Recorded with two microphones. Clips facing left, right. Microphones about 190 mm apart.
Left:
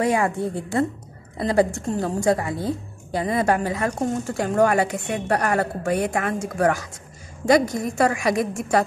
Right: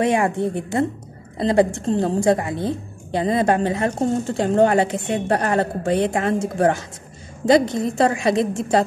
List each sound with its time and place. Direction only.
0.0 s a woman's voice: 25° right (ahead or behind)